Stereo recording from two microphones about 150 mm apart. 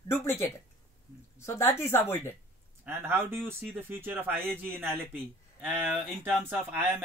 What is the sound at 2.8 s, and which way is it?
Speech, 15° right (ahead or behind).